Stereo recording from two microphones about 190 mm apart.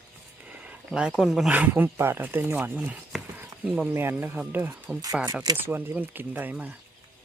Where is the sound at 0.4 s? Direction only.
5° right (ahead or behind).